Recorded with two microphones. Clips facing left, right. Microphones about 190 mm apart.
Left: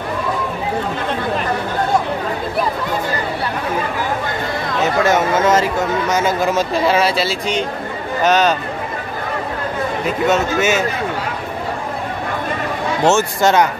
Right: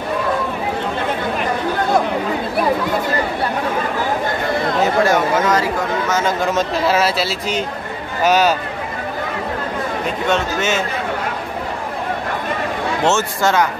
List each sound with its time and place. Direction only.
5.0 s a sound: 25° left (ahead or behind)
6.1 s speech: 5° left (ahead or behind)
10.0 s speech: 5° left (ahead or behind)
13.0 s speech: 15° left (ahead or behind)